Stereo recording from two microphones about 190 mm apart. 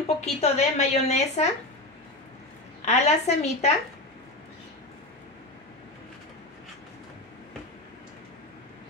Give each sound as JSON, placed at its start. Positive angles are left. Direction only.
{"t": 0.2, "sound": "a woman's voice", "side_deg": 35}
{"t": 2.8, "sound": "a woman's voice", "side_deg": 35}